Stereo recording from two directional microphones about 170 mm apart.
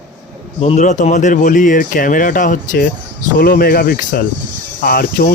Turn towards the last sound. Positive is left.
turn(degrees=60)  # may be behind; listen again after turning